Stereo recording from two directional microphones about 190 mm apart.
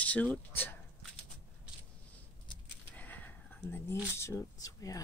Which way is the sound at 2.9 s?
10° left (ahead or behind).